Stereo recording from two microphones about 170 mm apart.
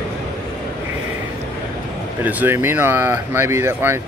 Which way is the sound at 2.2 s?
10° right (ahead or behind).